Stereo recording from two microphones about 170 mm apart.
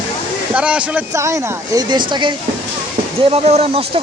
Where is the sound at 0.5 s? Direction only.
5° right (ahead or behind).